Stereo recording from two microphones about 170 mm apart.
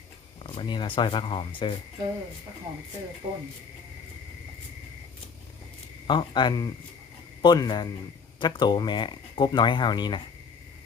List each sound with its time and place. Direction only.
0.4 s speech: 30° left (ahead or behind)
3.2 s speech: 40° right (ahead or behind)
6.1 s speech: 25° left (ahead or behind)